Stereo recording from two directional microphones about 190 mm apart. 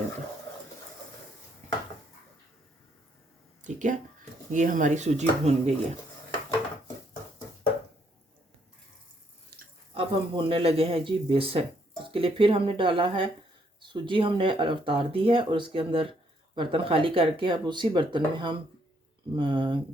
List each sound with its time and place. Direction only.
3.6 s a sound: 40° right (ahead or behind)
4.5 s speech: 40° right (ahead or behind)
9.9 s speech: 30° right (ahead or behind)